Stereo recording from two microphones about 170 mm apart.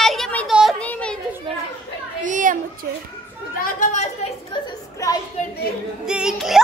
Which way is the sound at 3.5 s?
45° left (ahead or behind).